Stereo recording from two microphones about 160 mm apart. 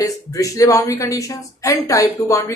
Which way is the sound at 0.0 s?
20° left (ahead or behind).